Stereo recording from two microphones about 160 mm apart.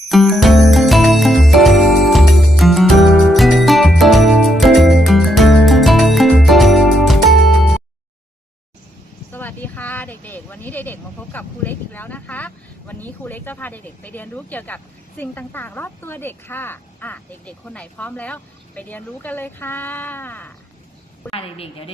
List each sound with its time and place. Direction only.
0.1 s music: centre (ahead or behind)
9.3 s a sound: 10° left (ahead or behind)
15.2 s speech: 10° left (ahead or behind)
21.2 s a woman's voice: 35° left (ahead or behind)